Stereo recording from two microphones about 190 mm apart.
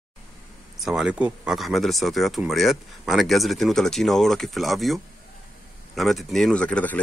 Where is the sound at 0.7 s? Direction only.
5° right (ahead or behind).